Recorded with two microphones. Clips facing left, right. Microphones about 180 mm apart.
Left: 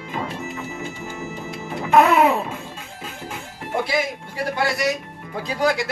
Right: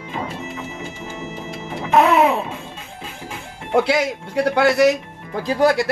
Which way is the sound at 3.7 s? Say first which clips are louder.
Right 6 dB; 75° right (ahead or behind).